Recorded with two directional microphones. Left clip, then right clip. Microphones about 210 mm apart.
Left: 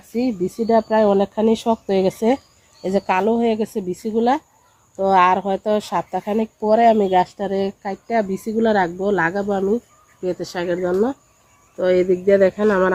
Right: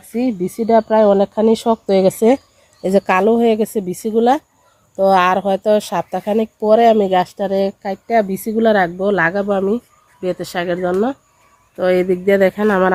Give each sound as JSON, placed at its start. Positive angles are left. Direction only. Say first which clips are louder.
{"t": 0.1, "sound": "speech", "louder": "right 2 dB", "side_deg": -35}